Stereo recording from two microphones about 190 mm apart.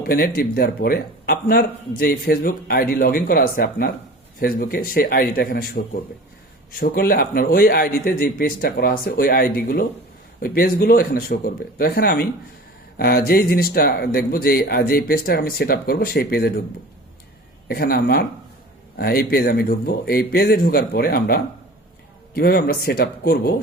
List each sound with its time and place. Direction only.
0.1 s speech: 50° left (ahead or behind)
17.7 s speech: 55° left (ahead or behind)